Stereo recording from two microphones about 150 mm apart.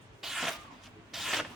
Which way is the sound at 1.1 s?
Centre (ahead or behind).